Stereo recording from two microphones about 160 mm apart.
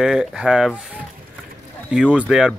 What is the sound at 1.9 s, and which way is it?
Speech, 5° right (ahead or behind).